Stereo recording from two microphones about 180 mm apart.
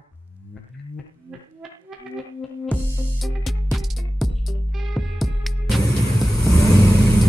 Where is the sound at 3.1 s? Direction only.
Centre (ahead or behind).